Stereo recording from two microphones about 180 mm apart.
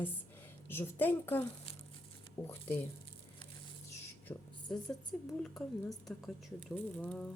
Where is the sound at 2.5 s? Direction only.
10° left (ahead or behind).